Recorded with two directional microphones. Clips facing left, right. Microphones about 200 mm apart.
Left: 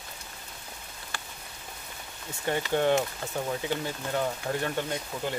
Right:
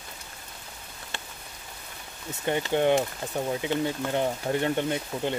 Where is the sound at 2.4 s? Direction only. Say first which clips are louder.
Right 2 dB; 20° right (ahead or behind).